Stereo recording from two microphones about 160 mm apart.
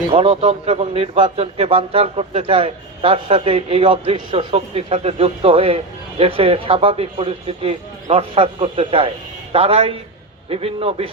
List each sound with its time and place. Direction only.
0.1 s a man's voice: 40° right (ahead or behind)